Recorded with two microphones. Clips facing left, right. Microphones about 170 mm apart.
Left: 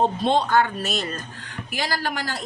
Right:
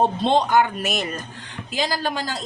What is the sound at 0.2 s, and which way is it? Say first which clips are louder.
A woman's voice: right 2 dB; 20° right (ahead or behind).